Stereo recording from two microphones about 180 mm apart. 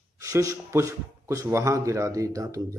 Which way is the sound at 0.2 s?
15° right (ahead or behind).